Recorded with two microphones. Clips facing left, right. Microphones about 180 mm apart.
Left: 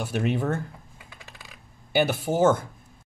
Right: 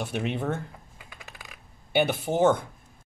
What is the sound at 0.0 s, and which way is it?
Speech, centre (ahead or behind).